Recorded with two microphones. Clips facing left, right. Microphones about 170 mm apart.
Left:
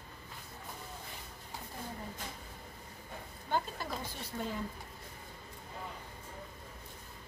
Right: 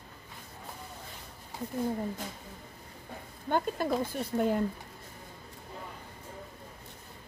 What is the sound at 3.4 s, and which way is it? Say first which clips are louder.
Speech: right 7 dB; 55° right (ahead or behind).